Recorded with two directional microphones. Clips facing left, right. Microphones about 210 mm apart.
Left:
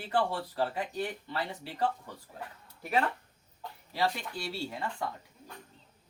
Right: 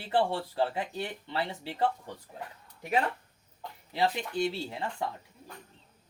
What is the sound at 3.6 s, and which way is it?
Speech, 20° right (ahead or behind).